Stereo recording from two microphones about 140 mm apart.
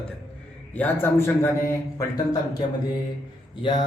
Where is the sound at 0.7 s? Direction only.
10° left (ahead or behind); by 3.8 s 35° left (ahead or behind).